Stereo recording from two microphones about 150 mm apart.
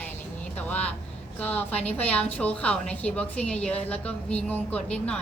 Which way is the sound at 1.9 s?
10° left (ahead or behind).